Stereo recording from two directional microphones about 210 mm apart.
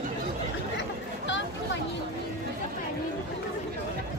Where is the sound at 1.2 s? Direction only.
60° left (ahead or behind).